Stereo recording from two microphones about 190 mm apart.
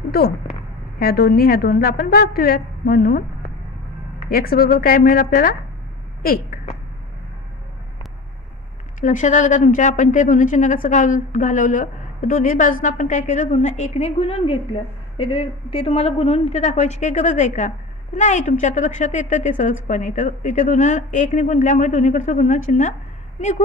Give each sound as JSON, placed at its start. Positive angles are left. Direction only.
{"t": 0.9, "sound": "a woman's voice", "side_deg": 55}
{"t": 4.3, "sound": "a woman's voice", "side_deg": 50}
{"t": 9.0, "sound": "a woman's voice", "side_deg": 40}